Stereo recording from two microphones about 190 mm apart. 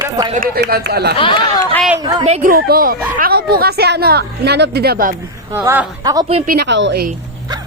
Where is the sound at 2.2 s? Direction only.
35° right (ahead or behind).